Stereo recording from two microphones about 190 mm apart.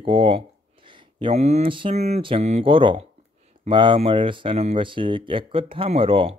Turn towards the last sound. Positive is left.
turn(degrees=-30)  # may be behind; listen again after turning